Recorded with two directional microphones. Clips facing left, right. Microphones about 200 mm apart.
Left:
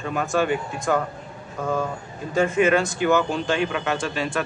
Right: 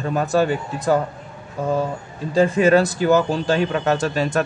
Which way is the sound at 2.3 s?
35° right (ahead or behind).